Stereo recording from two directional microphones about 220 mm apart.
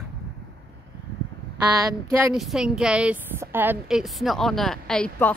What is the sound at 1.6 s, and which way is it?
Speech, 15° right (ahead or behind).